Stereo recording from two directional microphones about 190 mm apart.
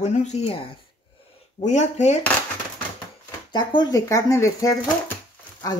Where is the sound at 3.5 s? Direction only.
25° left (ahead or behind).